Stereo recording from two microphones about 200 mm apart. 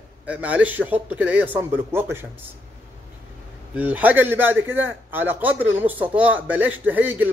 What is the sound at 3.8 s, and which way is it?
A man's voice, 10° right (ahead or behind).